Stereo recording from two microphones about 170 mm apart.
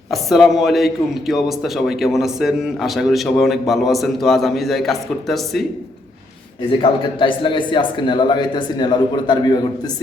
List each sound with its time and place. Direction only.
0.1 s a man's voice: centre (ahead or behind)
6.8 s a man's voice: 30° left (ahead or behind)